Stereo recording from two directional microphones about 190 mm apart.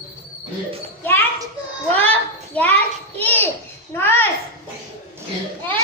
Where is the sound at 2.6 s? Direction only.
10° left (ahead or behind).